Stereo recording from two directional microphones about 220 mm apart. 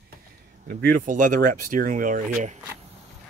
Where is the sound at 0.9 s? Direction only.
35° right (ahead or behind).